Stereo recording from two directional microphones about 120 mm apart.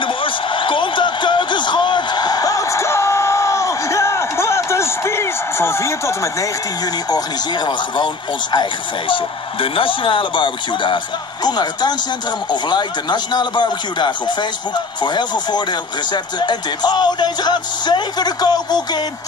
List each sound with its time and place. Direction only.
0.0 s basketball bounce: 45° left (ahead or behind); by 6.3 s 25° left (ahead or behind)
7.1 s a man's voice: 35° left (ahead or behind)